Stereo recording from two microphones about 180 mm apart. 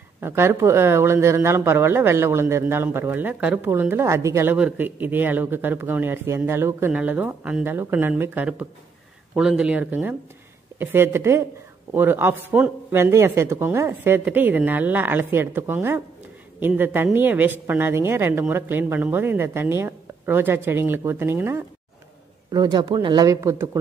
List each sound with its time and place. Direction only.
0.2 s speech: 15° right (ahead or behind)